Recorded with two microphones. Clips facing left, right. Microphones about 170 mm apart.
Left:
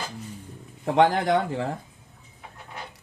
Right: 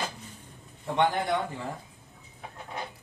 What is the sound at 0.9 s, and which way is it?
Speech, 90° left.